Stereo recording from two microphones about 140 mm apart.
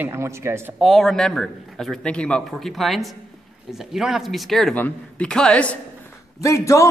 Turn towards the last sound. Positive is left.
turn(degrees=20)  # may be behind; listen again after turning